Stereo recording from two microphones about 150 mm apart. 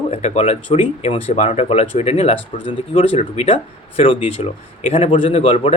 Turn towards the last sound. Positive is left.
turn(degrees=40)  # may be behind; listen again after turning